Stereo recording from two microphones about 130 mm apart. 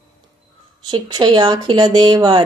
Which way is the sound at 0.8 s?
35° right (ahead or behind).